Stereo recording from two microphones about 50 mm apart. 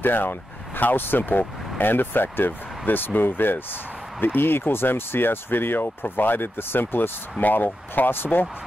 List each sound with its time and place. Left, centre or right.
0.0 s speech: left